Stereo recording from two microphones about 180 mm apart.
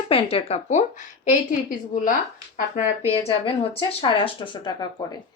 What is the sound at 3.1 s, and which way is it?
A woman's voice, 30° left (ahead or behind).